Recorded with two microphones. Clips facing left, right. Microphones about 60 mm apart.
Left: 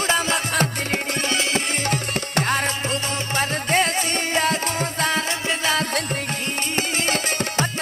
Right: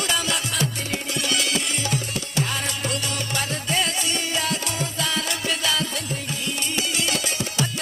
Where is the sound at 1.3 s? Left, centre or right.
Left.